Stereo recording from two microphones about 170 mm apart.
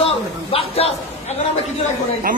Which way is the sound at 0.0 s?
35° left (ahead or behind).